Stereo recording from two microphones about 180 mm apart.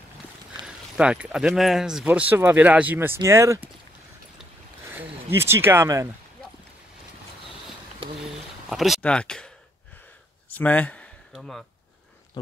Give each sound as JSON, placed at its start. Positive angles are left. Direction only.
{"t": 0.6, "sound": "speech", "side_deg": -5}
{"t": 4.9, "sound": "speech", "side_deg": -15}
{"t": 8.6, "sound": "speech", "side_deg": 0}
{"t": 10.5, "sound": "speech", "side_deg": 10}